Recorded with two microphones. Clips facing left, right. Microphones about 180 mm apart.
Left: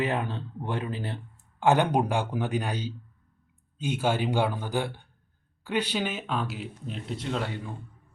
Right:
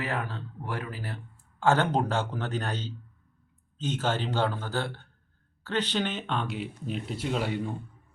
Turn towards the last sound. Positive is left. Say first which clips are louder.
# right 2 dB
turn(degrees=-10)  # may be behind; listen again after turning